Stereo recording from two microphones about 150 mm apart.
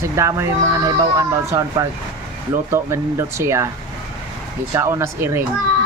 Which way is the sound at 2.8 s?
20° right (ahead or behind).